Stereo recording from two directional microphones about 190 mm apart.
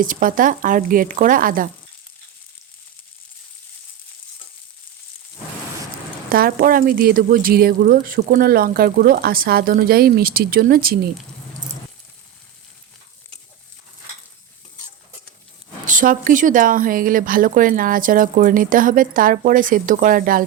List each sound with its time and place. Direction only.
0.0 s speech: 45° right (ahead or behind)
6.3 s speech: 50° right (ahead or behind)
15.9 s speech: 45° right (ahead or behind)